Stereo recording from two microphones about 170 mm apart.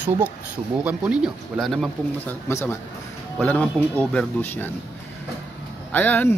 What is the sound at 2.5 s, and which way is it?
Speech, 15° left (ahead or behind).